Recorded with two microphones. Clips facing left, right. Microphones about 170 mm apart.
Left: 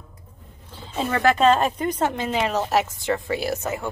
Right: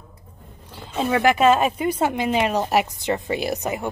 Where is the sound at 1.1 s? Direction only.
10° right (ahead or behind).